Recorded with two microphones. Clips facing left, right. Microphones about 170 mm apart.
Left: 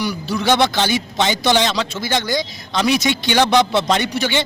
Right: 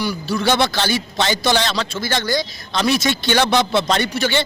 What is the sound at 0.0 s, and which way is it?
A man's voice, 20° left (ahead or behind).